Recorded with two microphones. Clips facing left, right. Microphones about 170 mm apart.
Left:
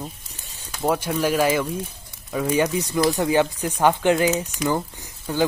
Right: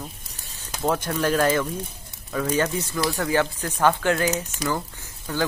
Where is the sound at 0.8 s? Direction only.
10° left (ahead or behind).